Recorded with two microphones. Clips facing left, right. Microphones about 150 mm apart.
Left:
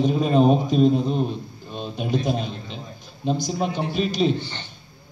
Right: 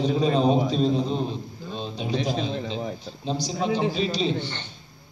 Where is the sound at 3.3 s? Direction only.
50° left (ahead or behind).